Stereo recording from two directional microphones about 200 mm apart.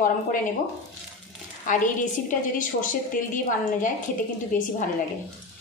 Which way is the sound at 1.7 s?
40° left (ahead or behind).